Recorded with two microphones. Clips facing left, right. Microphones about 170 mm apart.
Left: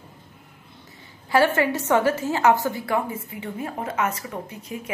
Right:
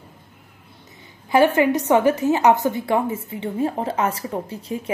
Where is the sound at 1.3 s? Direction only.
20° right (ahead or behind).